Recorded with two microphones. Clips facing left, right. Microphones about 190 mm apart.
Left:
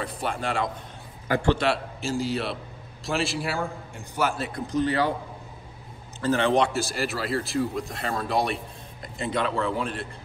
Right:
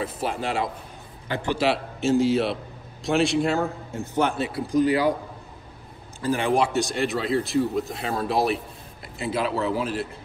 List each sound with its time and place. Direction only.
0.0 s speech: centre (ahead or behind)
1.3 s a man's voice: 20° right (ahead or behind)
1.6 s a man's voice: centre (ahead or behind)
4.2 s a man's voice: centre (ahead or behind)
6.2 s speech: 10° right (ahead or behind)